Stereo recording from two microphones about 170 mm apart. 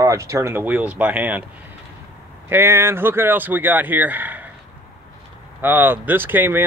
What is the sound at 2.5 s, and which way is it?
Speech, 15° right (ahead or behind).